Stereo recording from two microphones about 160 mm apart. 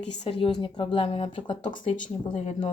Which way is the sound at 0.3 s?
35° left (ahead or behind).